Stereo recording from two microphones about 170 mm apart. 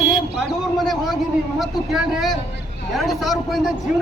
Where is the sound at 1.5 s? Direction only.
Centre (ahead or behind).